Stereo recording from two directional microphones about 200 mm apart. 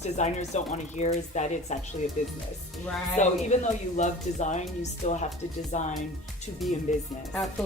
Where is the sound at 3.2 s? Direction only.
35° left (ahead or behind).